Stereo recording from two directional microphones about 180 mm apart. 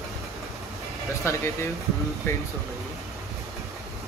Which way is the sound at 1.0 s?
15° left (ahead or behind).